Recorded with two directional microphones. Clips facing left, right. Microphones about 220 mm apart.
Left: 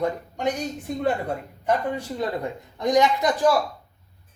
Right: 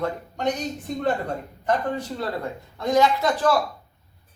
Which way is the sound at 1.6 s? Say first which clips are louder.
Even; 10° left (ahead or behind).